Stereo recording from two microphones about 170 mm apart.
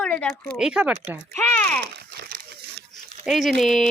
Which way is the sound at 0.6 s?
5° right (ahead or behind).